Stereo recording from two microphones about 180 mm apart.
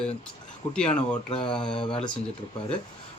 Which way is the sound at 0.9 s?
30° left (ahead or behind).